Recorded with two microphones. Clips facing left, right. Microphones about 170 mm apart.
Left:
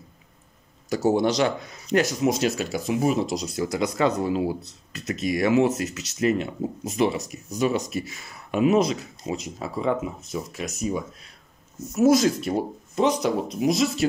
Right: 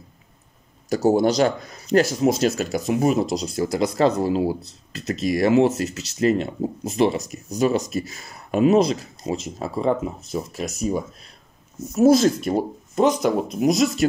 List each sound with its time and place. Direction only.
0.8 s speech: 40° right (ahead or behind)
12.4 s speech: 50° right (ahead or behind)